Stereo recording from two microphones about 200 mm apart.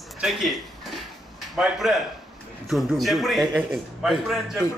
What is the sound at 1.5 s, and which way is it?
A man's voice, centre (ahead or behind).